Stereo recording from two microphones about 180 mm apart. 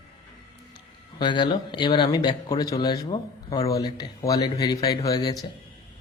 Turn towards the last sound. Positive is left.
turn(degrees=20)  # may be behind; listen again after turning